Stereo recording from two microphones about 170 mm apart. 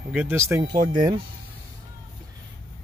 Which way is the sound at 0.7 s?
25° right (ahead or behind).